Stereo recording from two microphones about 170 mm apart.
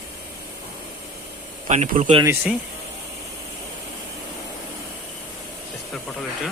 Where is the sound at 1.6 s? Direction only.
45° right (ahead or behind).